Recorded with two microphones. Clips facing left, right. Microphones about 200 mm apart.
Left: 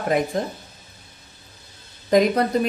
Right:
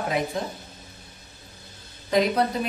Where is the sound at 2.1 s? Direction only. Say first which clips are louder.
Left 4 dB; 50° left (ahead or behind).